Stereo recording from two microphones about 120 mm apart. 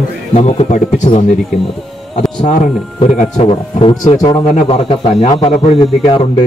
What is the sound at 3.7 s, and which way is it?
Speech, 40° left (ahead or behind).